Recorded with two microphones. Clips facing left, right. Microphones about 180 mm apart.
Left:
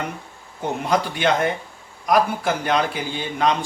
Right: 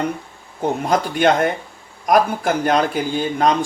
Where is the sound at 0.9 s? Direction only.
50° right (ahead or behind).